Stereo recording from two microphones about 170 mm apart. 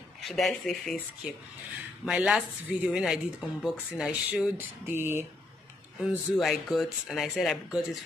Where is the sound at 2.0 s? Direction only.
5° right (ahead or behind).